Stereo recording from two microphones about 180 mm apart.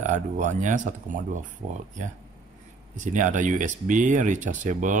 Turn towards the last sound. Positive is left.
turn(degrees=-45)  # may be behind; listen again after turning